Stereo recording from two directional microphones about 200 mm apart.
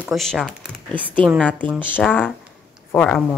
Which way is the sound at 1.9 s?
10° left (ahead or behind).